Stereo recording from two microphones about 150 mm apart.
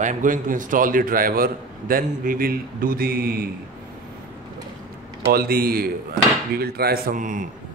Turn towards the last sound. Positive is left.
turn(degrees=-60)  # may be behind; listen again after turning